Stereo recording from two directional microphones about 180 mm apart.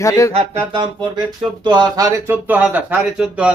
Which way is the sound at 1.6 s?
25° right (ahead or behind).